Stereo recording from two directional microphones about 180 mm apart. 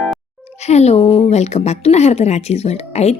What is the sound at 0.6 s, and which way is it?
A woman's voice, 35° left (ahead or behind).